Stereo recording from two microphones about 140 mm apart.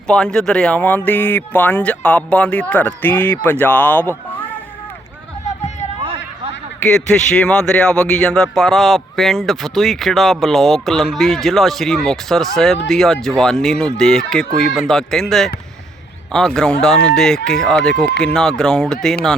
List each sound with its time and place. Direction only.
0.1 s speech: 5° left (ahead or behind)
6.0 s a sound: 40° right (ahead or behind)
6.9 s speech: 5° left (ahead or behind)